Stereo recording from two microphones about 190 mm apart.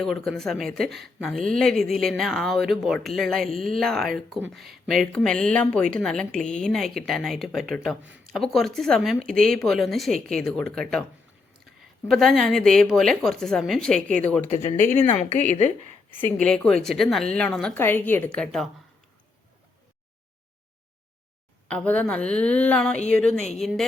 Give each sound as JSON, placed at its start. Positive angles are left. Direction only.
{"t": 0.0, "sound": "speech", "side_deg": 0}
{"t": 12.0, "sound": "speech", "side_deg": 0}
{"t": 15.3, "sound": "speech", "side_deg": 40}
{"t": 16.4, "sound": "speech", "side_deg": 5}
{"t": 21.7, "sound": "speech", "side_deg": 5}